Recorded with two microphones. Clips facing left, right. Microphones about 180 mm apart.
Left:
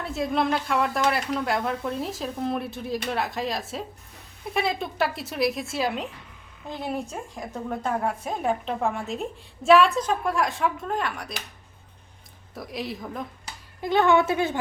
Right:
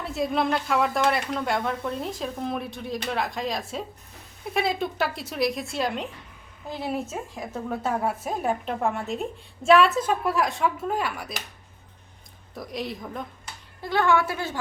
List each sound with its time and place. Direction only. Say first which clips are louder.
0.0 s speech: even; centre (ahead or behind)
12.5 s speech: even; centre (ahead or behind)
13.8 s speech: left 3 dB; 20° left (ahead or behind)